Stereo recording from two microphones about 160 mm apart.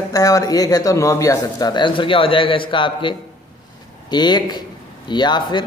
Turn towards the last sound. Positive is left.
turn(degrees=30)  # may be behind; listen again after turning